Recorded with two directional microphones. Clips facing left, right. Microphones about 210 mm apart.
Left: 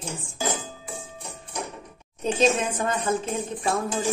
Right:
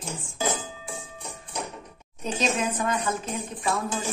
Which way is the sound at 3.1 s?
30° left (ahead or behind).